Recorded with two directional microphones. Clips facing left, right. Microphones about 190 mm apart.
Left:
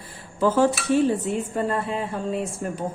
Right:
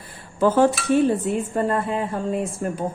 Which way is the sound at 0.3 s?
55° right (ahead or behind).